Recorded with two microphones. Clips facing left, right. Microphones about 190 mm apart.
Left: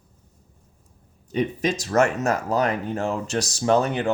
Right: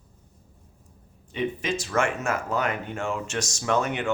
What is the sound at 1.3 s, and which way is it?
Speech, 40° left (ahead or behind).